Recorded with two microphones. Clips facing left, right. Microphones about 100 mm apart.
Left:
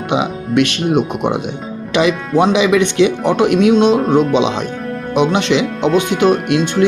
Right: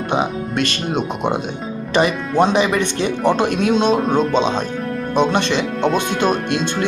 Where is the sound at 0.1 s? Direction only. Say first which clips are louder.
Left 4 dB; 75° left (ahead or behind); by 1.4 s 60° left (ahead or behind).